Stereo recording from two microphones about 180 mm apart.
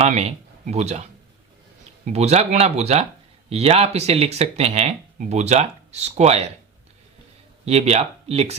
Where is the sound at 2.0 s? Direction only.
35° right (ahead or behind).